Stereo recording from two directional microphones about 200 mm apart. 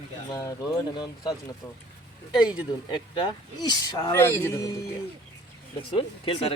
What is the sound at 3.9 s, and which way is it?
Speech, 15° left (ahead or behind).